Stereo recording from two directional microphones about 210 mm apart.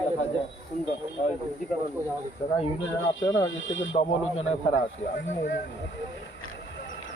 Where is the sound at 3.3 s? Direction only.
60° left (ahead or behind).